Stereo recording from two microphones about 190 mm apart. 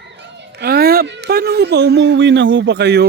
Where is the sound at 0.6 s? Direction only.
55° right (ahead or behind).